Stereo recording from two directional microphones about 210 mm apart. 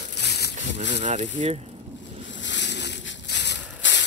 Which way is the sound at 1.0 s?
30° right (ahead or behind).